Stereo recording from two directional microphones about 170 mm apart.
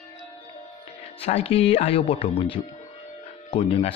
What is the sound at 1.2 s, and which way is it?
Speech, 35° left (ahead or behind).